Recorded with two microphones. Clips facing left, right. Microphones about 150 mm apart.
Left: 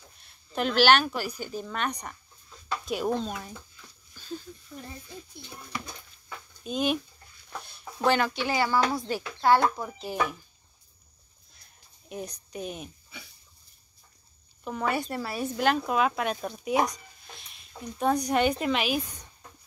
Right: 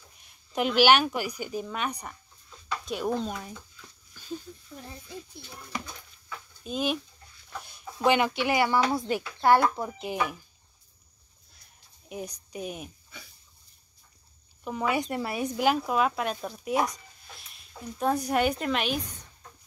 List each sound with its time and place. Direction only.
0.2 s speech: 15° right (ahead or behind)
6.6 s speech: centre (ahead or behind)
8.0 s speech: 15° right (ahead or behind)
12.1 s speech: 5° right (ahead or behind)
14.6 s speech: 10° right (ahead or behind)